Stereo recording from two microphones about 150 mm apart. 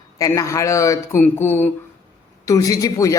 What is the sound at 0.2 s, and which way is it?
A man's voice, 20° left (ahead or behind).